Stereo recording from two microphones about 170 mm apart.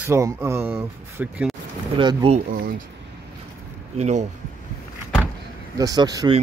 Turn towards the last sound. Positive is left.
turn(degrees=-25)  # may be behind; listen again after turning